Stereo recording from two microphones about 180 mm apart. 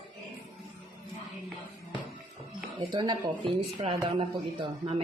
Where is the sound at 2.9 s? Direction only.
25° right (ahead or behind).